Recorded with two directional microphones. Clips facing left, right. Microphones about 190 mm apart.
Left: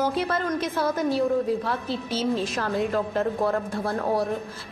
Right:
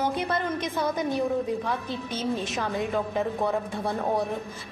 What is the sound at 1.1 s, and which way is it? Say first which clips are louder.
Speech: left 3 dB; 15° right (ahead or behind).